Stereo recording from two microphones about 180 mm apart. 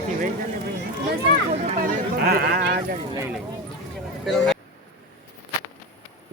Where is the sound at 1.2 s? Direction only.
40° right (ahead or behind); by 2.8 s 60° right (ahead or behind).